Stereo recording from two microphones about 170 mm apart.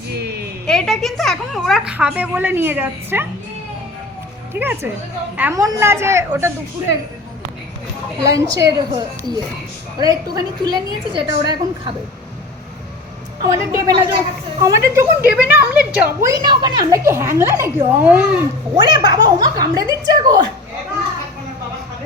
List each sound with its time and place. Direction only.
0.7 s a woman's voice: centre (ahead or behind)
4.5 s a woman's voice: 10° right (ahead or behind)
8.2 s a woman's voice: 20° right (ahead or behind)
13.4 s a woman's voice: 20° right (ahead or behind)
16.0 s a woman's voice: 20° right (ahead or behind)
18.7 s a woman's voice: 25° right (ahead or behind)